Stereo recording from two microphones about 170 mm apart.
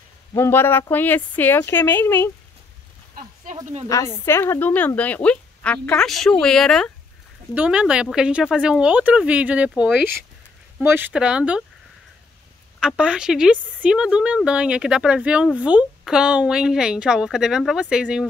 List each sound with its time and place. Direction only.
0.3 s a woman's voice: 15° left (ahead or behind)
3.5 s speech: 50° right (ahead or behind)
3.9 s a woman's voice: 15° left (ahead or behind); by 11.6 s 5° right (ahead or behind)
12.8 s a woman's voice: 5° right (ahead or behind)